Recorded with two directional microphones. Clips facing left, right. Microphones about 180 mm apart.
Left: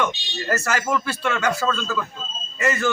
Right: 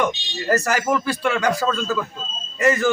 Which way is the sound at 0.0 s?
15° right (ahead or behind).